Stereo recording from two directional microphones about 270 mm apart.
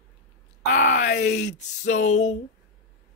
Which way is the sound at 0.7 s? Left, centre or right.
Left.